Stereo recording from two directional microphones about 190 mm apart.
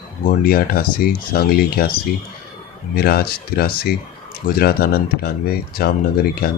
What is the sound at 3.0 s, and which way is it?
Speech, 55° left (ahead or behind).